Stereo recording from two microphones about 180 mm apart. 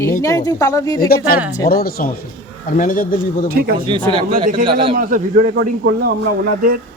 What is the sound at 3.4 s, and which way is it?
Speech, 55° right (ahead or behind).